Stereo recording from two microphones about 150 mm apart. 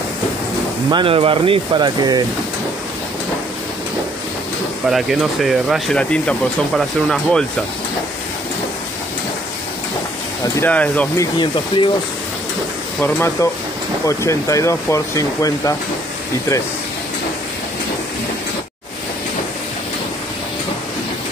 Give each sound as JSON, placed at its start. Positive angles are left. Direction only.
{"t": 0.8, "sound": "speech", "side_deg": -35}
{"t": 4.8, "sound": "speech", "side_deg": 0}
{"t": 10.7, "sound": "speech", "side_deg": 10}
{"t": 11.1, "sound": "speech", "side_deg": 30}
{"t": 13.0, "sound": "speech", "side_deg": 15}